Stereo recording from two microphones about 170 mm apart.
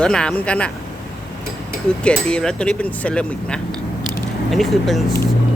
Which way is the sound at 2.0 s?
5° left (ahead or behind).